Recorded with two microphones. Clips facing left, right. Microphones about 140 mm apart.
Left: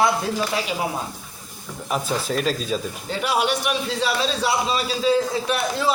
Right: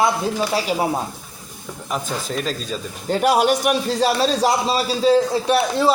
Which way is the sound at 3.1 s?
45° right (ahead or behind).